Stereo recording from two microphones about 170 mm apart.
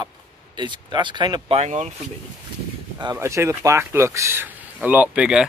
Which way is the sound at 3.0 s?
20° right (ahead or behind).